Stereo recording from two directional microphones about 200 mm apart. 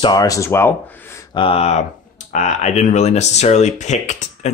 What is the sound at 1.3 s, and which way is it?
Speech, 25° left (ahead or behind).